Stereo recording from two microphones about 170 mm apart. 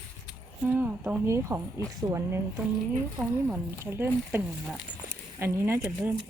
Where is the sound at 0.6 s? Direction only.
10° right (ahead or behind).